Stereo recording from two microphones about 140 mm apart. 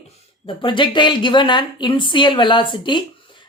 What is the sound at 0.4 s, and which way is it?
Speech, 35° left (ahead or behind).